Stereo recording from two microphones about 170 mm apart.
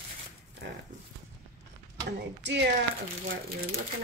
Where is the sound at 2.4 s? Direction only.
90° right.